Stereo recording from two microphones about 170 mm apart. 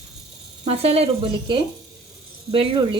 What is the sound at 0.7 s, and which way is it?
Speech, 35° right (ahead or behind).